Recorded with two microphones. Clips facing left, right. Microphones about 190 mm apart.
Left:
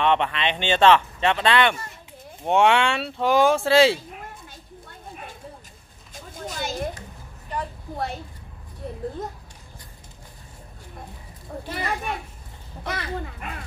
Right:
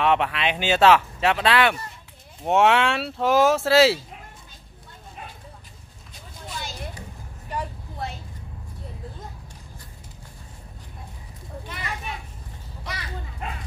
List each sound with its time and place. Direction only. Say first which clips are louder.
0.0 s speech: even; 5° right (ahead or behind)
6.4 s a sound: left 7 dB; 45° left (ahead or behind)
11.6 s children playing: left 6 dB; 35° left (ahead or behind)
12.8 s dog: left 7 dB; 55° left (ahead or behind)